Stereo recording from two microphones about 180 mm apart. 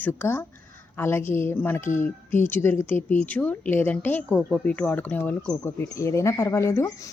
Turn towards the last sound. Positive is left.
turn(degrees=15)  # may be behind; listen again after turning